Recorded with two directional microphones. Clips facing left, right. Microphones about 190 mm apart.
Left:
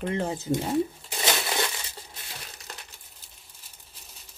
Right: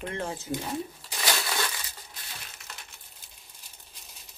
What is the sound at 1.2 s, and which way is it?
Crumpling, 25° left (ahead or behind).